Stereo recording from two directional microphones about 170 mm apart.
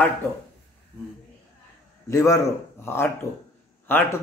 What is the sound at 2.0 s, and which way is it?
A man's voice, 20° left (ahead or behind).